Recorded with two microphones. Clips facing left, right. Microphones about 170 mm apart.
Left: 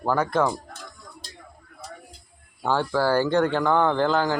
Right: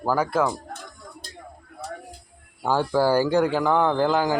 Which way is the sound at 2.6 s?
10° right (ahead or behind).